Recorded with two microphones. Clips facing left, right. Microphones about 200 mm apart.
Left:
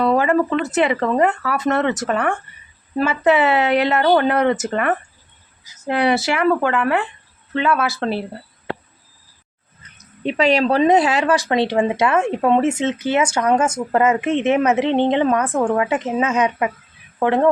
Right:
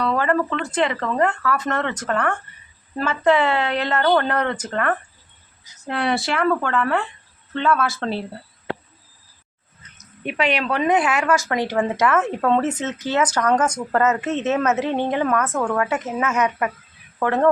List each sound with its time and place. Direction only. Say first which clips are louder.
0.0 s a woman's voice: left 4 dB; 15° left (ahead or behind)
10.2 s speech: left 6 dB; 35° left (ahead or behind)
11.8 s a woman's voice: left 2 dB; 15° left (ahead or behind)